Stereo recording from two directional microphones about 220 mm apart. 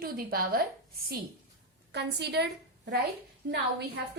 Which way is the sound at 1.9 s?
50° right (ahead or behind).